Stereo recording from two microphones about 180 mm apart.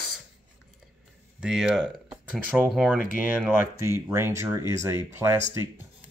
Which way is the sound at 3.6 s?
15° right (ahead or behind).